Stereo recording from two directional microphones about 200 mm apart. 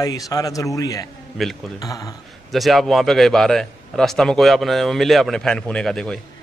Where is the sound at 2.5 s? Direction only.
Centre (ahead or behind).